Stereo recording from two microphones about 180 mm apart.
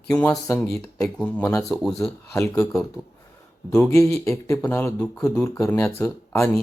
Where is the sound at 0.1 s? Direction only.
15° left (ahead or behind).